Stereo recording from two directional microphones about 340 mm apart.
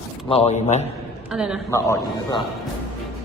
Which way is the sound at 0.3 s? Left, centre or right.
Centre.